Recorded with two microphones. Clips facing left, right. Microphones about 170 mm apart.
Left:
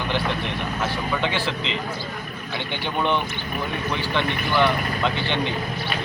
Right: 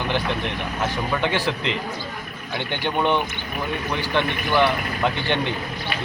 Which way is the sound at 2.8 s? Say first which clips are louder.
Right 2 dB; 15° right (ahead or behind).